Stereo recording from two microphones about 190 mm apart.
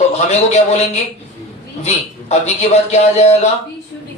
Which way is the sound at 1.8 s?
35° left (ahead or behind).